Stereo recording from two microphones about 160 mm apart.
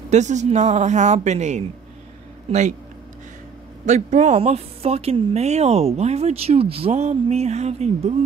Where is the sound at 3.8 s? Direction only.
45° right (ahead or behind).